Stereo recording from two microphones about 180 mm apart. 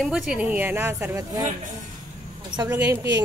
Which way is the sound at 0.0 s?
Centre (ahead or behind).